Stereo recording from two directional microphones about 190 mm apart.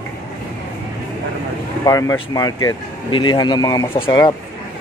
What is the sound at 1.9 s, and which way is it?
Speech, 20° left (ahead or behind).